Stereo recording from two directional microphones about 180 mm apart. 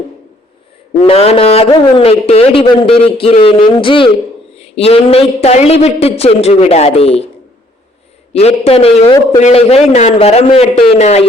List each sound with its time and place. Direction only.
1.0 s a man's voice: 35° left (ahead or behind)
8.3 s a man's voice: 35° left (ahead or behind)